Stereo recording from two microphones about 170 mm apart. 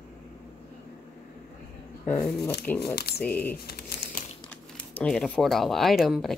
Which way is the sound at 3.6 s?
65° left (ahead or behind).